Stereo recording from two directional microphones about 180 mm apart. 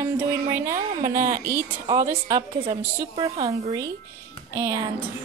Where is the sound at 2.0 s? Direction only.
20° right (ahead or behind).